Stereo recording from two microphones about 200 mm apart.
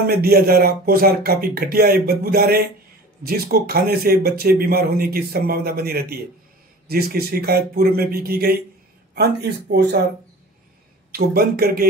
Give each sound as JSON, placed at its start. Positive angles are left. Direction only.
{"t": 0.0, "sound": "speech", "side_deg": -50}
{"t": 11.1, "sound": "speech", "side_deg": -50}